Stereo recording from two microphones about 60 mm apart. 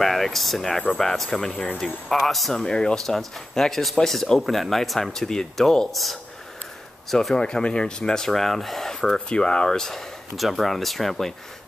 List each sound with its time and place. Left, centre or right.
0.0 s speech: centre
1.5 s speech: left
2.0 s speech: centre